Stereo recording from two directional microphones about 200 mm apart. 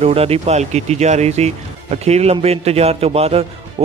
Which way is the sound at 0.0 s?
30° right (ahead or behind).